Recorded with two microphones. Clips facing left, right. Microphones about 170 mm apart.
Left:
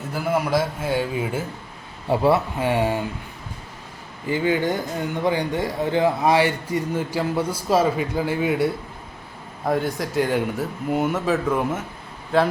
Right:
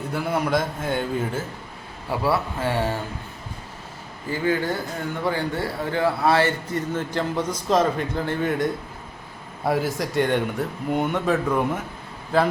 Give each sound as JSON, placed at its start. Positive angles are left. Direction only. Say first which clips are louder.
{"t": 0.1, "sound": "a man's voice", "louder": "left 2 dB", "side_deg": 5}
{"t": 2.0, "sound": "a man's voice", "louder": "left 5 dB", "side_deg": 25}
{"t": 4.3, "sound": "a man's voice", "louder": "left 2 dB", "side_deg": 20}
{"t": 9.6, "sound": "speech", "louder": "even", "side_deg": 0}